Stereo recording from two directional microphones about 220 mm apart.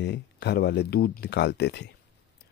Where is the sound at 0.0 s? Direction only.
50° left (ahead or behind).